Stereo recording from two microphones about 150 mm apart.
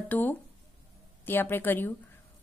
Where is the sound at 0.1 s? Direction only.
10° left (ahead or behind).